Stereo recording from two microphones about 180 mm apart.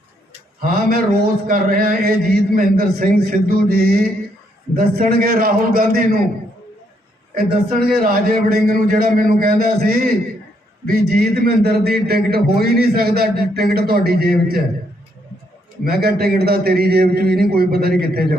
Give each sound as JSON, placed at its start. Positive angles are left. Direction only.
{"t": 0.6, "sound": "a man's voice", "side_deg": -50}
{"t": 7.3, "sound": "a man's voice", "side_deg": -55}
{"t": 15.8, "sound": "a man's voice", "side_deg": -60}